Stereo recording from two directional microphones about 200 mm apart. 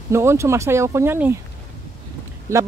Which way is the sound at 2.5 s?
15° right (ahead or behind).